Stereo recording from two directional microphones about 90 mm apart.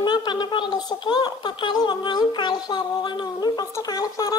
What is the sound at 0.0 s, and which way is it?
A woman's voice, 55° left (ahead or behind).